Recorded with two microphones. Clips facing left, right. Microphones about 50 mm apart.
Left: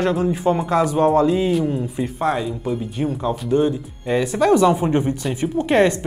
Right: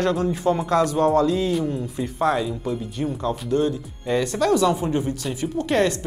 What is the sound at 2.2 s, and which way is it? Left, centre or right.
Speech, centre.